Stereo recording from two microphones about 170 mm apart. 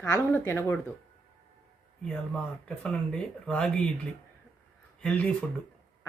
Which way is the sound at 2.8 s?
5° left (ahead or behind).